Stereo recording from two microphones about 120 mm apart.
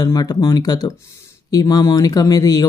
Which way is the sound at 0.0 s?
35° left (ahead or behind).